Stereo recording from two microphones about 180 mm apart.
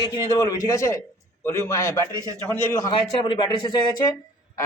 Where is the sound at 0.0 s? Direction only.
20° left (ahead or behind).